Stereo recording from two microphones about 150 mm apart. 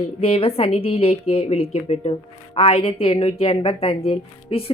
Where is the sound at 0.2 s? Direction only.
40° left (ahead or behind).